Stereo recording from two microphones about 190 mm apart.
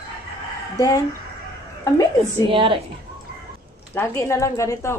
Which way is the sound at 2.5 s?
25° right (ahead or behind).